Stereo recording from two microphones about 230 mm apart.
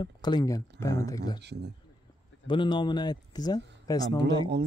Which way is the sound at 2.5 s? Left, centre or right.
Left.